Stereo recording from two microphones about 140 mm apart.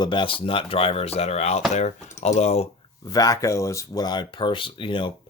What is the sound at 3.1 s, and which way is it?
Speech, 25° left (ahead or behind).